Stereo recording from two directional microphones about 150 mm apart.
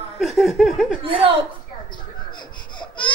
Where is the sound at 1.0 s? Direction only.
35° right (ahead or behind).